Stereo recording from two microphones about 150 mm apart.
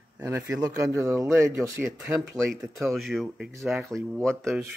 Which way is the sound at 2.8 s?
Centre (ahead or behind).